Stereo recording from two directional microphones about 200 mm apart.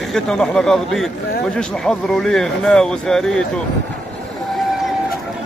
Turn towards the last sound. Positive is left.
turn(degrees=5)  # may be behind; listen again after turning